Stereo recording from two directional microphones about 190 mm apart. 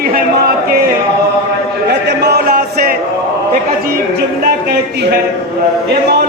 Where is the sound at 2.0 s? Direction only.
60° right (ahead or behind).